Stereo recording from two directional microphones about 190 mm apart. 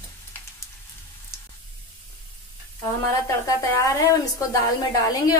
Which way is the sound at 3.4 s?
20° left (ahead or behind).